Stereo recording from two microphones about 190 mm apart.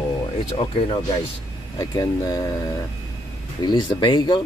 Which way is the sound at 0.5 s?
30° left (ahead or behind).